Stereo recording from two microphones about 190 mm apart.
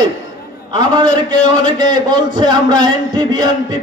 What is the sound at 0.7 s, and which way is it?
A man's voice, 20° right (ahead or behind).